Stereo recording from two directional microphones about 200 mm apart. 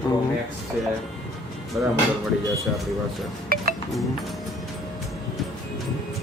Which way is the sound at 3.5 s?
45° right (ahead or behind).